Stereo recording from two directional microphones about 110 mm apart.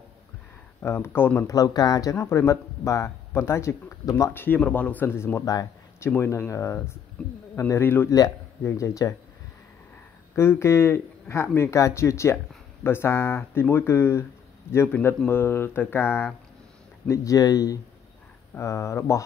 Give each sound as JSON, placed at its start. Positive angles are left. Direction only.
{"t": 0.8, "sound": "speech", "side_deg": 20}
{"t": 1.5, "sound": "speech", "side_deg": 35}
{"t": 4.3, "sound": "speech", "side_deg": 20}
{"t": 6.0, "sound": "speech", "side_deg": 20}
{"t": 7.2, "sound": "speech", "side_deg": 5}
{"t": 7.5, "sound": "speech", "side_deg": 25}
{"t": 8.1, "sound": "speech", "side_deg": 30}
{"t": 10.3, "sound": "speech", "side_deg": 25}